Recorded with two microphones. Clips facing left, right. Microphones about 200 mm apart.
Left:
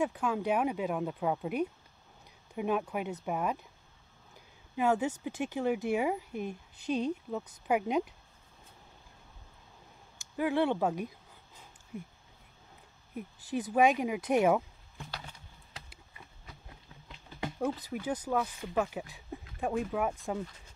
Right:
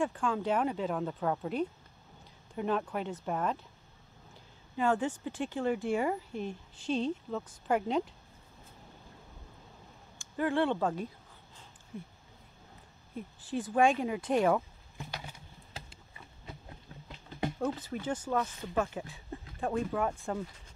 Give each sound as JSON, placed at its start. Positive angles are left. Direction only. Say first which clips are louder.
{"t": 0.0, "sound": "a woman's voice", "louder": "even", "side_deg": 5}
{"t": 4.7, "sound": "a woman's voice", "louder": "left 1 dB", "side_deg": 10}
{"t": 10.3, "sound": "a woman's voice", "louder": "left 1 dB", "side_deg": 10}
{"t": 13.1, "sound": "a woman's voice", "louder": "left 1 dB", "side_deg": 10}
{"t": 15.0, "sound": "a sound", "louder": "right 2 dB", "side_deg": -15}
{"t": 17.6, "sound": "a woman's voice", "louder": "left 3 dB", "side_deg": 10}